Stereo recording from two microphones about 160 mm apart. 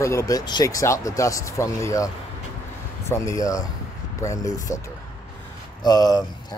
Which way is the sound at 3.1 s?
20° left (ahead or behind).